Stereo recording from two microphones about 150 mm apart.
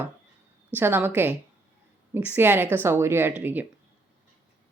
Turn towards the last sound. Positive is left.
turn(degrees=-10)  # may be behind; listen again after turning